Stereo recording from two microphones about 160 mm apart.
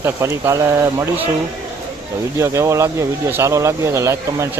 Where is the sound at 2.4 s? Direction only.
15° right (ahead or behind).